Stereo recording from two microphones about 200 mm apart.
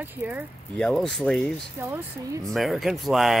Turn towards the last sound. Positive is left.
turn(degrees=0)  # may be behind; listen again after turning